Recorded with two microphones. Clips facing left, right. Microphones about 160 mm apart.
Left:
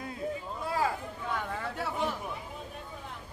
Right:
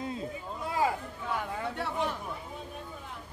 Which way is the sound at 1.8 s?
Centre (ahead or behind).